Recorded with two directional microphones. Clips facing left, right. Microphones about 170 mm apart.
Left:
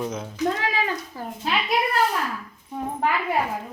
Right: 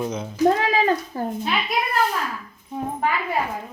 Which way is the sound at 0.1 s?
Centre (ahead or behind).